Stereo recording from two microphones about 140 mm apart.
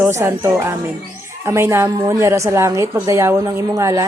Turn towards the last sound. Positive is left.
turn(degrees=-25)  # may be behind; listen again after turning